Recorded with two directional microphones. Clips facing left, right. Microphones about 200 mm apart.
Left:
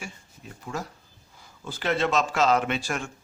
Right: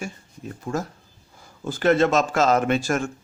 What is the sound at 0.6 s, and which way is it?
Speech, 45° right (ahead or behind).